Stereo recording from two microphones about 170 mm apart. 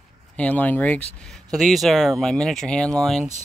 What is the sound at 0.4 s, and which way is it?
Speech, 10° left (ahead or behind).